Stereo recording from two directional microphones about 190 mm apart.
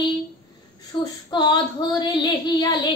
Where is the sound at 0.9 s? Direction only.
25° left (ahead or behind).